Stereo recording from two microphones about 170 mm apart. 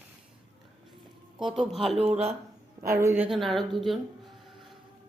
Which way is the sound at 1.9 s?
40° right (ahead or behind).